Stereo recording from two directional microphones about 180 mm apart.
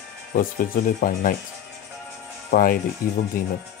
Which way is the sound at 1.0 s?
50° left (ahead or behind).